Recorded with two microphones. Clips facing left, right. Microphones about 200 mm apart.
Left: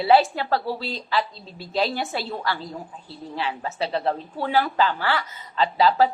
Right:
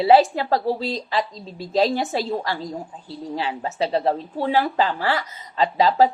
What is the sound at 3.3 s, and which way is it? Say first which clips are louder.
A woman's voice: right 2 dB; 30° right (ahead or behind).